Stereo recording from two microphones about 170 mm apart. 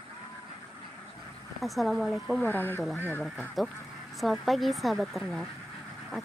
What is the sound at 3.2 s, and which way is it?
Speech, 5° right (ahead or behind).